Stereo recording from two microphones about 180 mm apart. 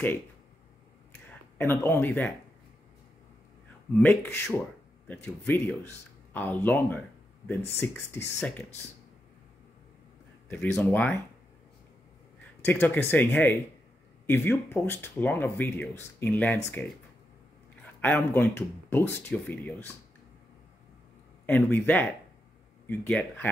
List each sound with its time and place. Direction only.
1.6 s speech: 10° left (ahead or behind)
3.9 s speech: 10° left (ahead or behind)
10.5 s speech: 10° left (ahead or behind)
12.6 s speech: 10° left (ahead or behind)
18.0 s speech: 10° left (ahead or behind)
21.5 s speech: 10° left (ahead or behind)